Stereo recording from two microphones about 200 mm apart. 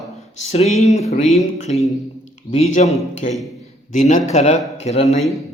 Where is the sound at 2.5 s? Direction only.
35° left (ahead or behind).